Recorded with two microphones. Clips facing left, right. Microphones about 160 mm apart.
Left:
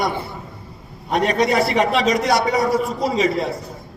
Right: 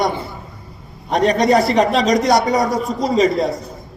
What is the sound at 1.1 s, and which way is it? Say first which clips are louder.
A man's voice: right 4 dB; 40° right (ahead or behind).